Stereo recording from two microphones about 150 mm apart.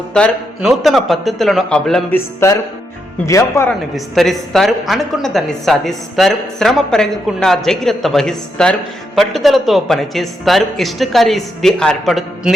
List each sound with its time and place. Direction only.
0.1 s speech: centre (ahead or behind)
2.1 s music: 15° left (ahead or behind)
3.2 s speech: 20° left (ahead or behind)
3.7 s speech: centre (ahead or behind)